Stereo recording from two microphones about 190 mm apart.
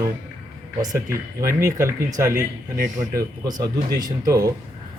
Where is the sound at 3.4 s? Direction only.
20° right (ahead or behind).